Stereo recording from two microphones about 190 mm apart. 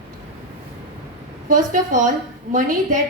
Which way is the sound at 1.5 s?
45° right (ahead or behind).